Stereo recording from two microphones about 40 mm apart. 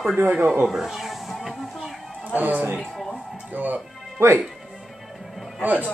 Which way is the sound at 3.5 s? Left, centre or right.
Right.